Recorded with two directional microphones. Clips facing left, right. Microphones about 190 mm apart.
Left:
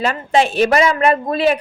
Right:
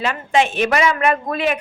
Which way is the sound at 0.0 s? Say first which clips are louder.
Left 2 dB; 35° left (ahead or behind).